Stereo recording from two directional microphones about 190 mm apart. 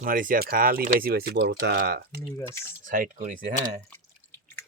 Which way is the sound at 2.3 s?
15° left (ahead or behind).